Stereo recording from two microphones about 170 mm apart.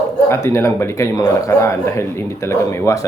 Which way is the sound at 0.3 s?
15° left (ahead or behind).